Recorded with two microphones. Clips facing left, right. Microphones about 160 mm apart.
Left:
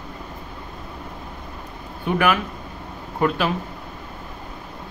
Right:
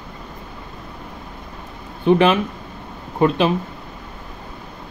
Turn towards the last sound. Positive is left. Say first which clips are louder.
# right 5 dB
turn(degrees=-20)  # may be behind; listen again after turning